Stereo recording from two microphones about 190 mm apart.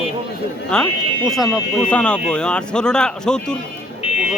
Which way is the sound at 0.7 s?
5° left (ahead or behind).